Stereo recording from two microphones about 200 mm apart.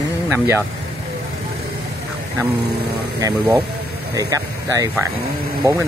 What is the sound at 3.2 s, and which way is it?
Speech, 15° right (ahead or behind).